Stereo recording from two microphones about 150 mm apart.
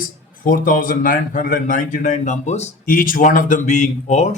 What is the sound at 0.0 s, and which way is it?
Speech, 65° left (ahead or behind).